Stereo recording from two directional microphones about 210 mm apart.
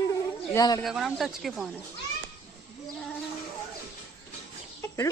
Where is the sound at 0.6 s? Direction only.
15° left (ahead or behind).